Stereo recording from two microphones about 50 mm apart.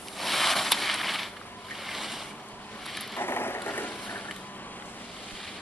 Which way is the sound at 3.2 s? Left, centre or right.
Left.